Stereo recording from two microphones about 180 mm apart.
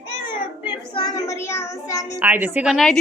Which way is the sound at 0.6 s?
25° left (ahead or behind).